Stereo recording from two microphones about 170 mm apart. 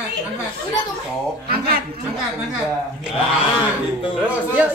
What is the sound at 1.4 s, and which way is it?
Chuckle, 65° right (ahead or behind).